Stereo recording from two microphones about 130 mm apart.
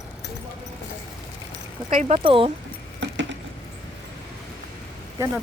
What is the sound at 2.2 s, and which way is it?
Speech, 45° right (ahead or behind).